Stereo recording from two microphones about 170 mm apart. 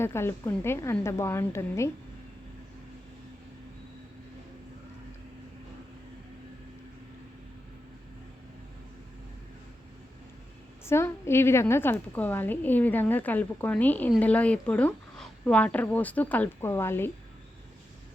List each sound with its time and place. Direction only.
0.0 s a woman's voice: 15° left (ahead or behind)
10.8 s a woman's voice: 15° left (ahead or behind)